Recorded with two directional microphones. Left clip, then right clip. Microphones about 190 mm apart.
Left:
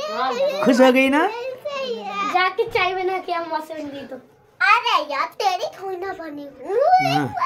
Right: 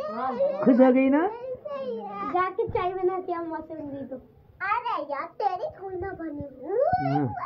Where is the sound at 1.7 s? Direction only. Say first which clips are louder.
Left 7 dB; 30° left (ahead or behind).